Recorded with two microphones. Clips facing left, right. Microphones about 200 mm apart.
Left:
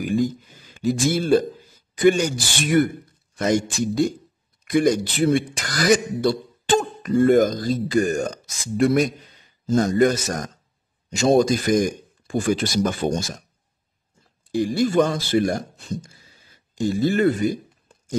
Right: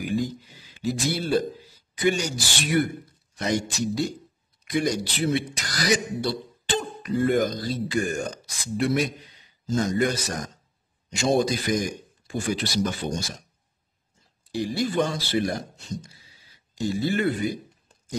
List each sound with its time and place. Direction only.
0.0 s a man's voice: 45° left (ahead or behind)
14.5 s a man's voice: 50° left (ahead or behind)